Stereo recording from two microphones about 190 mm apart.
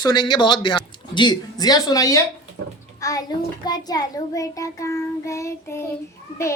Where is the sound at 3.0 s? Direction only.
15° left (ahead or behind).